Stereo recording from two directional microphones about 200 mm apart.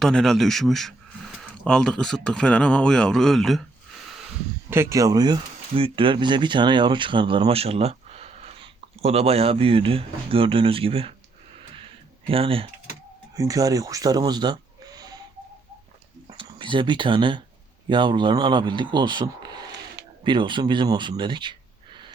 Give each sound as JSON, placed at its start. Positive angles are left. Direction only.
{"t": 0.0, "sound": "speech", "side_deg": 0}
{"t": 4.7, "sound": "speech", "side_deg": -15}
{"t": 12.3, "sound": "speech", "side_deg": -30}
{"t": 13.3, "sound": "speech", "side_deg": -15}
{"t": 16.2, "sound": "speech", "side_deg": -25}